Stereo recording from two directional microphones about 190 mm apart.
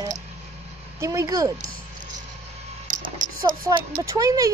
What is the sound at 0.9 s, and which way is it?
Speech, 15° right (ahead or behind).